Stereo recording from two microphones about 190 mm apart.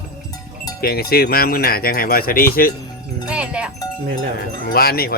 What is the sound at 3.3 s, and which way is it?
Wind chime, 5° right (ahead or behind).